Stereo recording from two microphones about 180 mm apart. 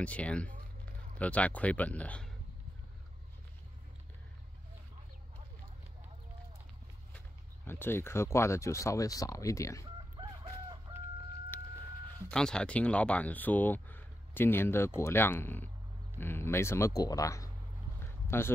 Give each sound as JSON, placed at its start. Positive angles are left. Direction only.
{"t": 0.0, "sound": "speech", "side_deg": 5}
{"t": 7.2, "sound": "speech", "side_deg": 10}
{"t": 10.1, "sound": "chicken", "side_deg": -25}
{"t": 12.3, "sound": "speech", "side_deg": 5}
{"t": 18.0, "sound": "a sound", "side_deg": 15}